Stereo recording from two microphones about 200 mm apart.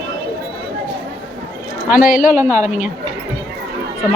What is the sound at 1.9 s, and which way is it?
Speech, 45° left (ahead or behind).